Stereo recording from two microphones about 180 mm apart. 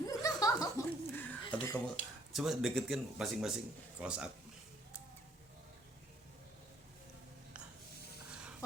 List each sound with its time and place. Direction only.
0.0 s chuckle: 20° left (ahead or behind)
2.3 s speech: centre (ahead or behind)